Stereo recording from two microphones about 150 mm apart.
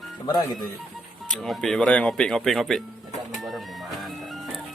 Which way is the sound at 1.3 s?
Centre (ahead or behind).